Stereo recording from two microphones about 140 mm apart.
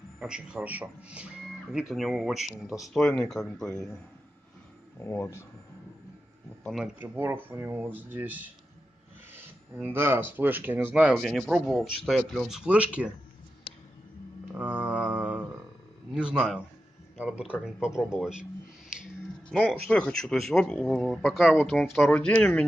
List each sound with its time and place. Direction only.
0.2 s speech: 5° right (ahead or behind)
5.0 s speech: 15° left (ahead or behind)
6.6 s speech: centre (ahead or behind)
7.0 s speech: 15° right (ahead or behind)
11.1 s speech: centre (ahead or behind)
14.5 s mantra: 5° right (ahead or behind)
16.2 s speech: 5° right (ahead or behind)
19.5 s speech: 10° left (ahead or behind)